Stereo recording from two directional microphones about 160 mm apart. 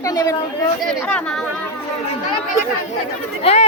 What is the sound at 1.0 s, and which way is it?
Speech, 5° left (ahead or behind).